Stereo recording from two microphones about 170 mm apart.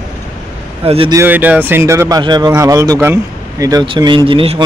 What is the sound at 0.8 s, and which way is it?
Speech, 35° right (ahead or behind).